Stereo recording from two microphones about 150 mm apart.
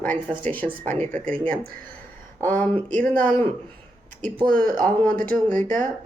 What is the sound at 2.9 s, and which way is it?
Speech, 65° right (ahead or behind).